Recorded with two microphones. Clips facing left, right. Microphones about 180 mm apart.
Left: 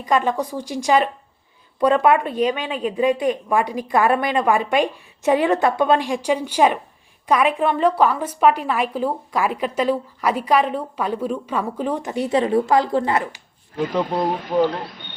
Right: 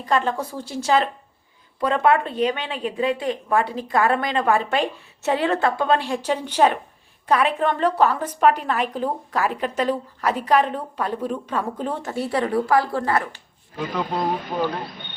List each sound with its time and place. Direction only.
0.0 s a woman's voice: 15° left (ahead or behind)